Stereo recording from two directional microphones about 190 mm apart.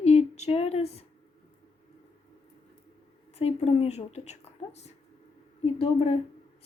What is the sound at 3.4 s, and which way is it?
Speech, 35° left (ahead or behind).